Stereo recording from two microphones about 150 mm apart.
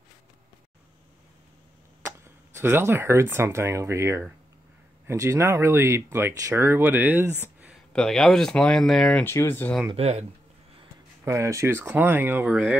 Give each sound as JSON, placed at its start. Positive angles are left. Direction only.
{"t": 2.0, "sound": "speech", "side_deg": -15}
{"t": 7.9, "sound": "speech", "side_deg": 5}
{"t": 9.2, "sound": "speech", "side_deg": 15}
{"t": 9.9, "sound": "speech", "side_deg": -45}
{"t": 11.2, "sound": "speech", "side_deg": -20}